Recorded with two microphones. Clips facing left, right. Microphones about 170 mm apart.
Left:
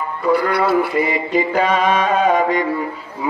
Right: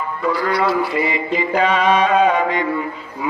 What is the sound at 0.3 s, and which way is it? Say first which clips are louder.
Mantra: left 3 dB; 60° left (ahead or behind).